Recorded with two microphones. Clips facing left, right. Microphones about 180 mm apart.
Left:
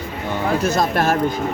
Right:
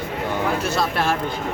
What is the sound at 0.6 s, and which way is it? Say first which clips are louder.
Speech: left 4 dB; 45° left (ahead or behind).